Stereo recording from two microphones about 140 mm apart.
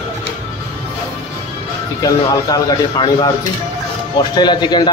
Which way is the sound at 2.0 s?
25° left (ahead or behind).